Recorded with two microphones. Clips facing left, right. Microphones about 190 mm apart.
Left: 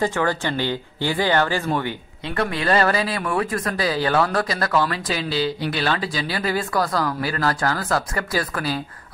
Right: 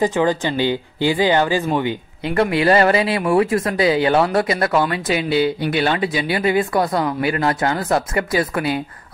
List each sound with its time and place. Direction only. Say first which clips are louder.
0.0 s speech: right 4 dB; 15° right (ahead or behind)
5.3 s speech: right 6 dB; 55° right (ahead or behind)
6.3 s speech: right 5 dB; 20° right (ahead or behind)